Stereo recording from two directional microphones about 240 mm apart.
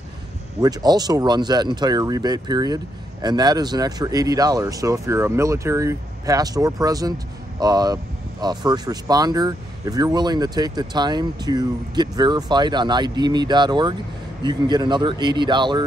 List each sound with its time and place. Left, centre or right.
0.6 s speech: centre